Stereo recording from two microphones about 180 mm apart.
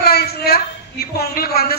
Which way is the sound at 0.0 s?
60° left (ahead or behind).